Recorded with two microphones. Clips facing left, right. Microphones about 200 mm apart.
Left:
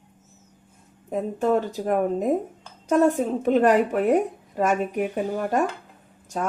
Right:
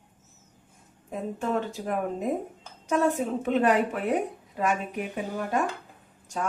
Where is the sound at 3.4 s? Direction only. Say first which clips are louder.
Left 5 dB; 40° left (ahead or behind).